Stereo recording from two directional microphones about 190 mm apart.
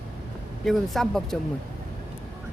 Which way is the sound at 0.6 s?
Centre (ahead or behind).